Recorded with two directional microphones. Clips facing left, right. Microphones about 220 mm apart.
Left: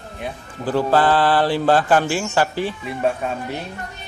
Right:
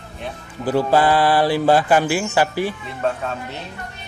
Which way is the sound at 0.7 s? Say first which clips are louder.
Right 1 dB; 10° right (ahead or behind).